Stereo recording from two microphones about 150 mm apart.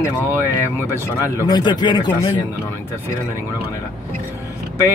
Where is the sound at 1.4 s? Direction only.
30° left (ahead or behind).